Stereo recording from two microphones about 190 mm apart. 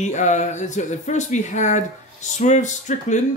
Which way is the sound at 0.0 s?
40° left (ahead or behind).